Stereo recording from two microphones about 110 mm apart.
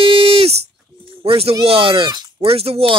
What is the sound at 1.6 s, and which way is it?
Speech, 55° right (ahead or behind).